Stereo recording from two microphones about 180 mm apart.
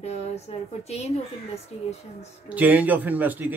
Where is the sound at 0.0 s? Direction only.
35° left (ahead or behind).